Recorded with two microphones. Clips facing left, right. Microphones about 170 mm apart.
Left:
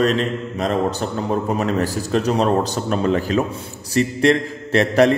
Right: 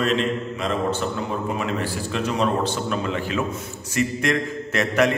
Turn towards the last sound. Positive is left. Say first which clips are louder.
# left 5 dB
turn(degrees=35)  # may be behind; listen again after turning